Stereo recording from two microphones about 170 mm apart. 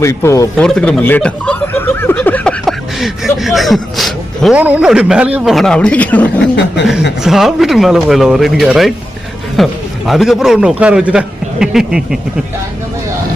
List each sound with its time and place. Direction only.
0.0 s speech: 15° left (ahead or behind)
0.5 s speech: 5° left (ahead or behind)
7.3 s a man's voice: centre (ahead or behind)